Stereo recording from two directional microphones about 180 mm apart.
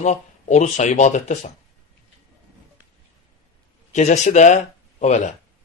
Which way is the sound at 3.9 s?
40° left (ahead or behind).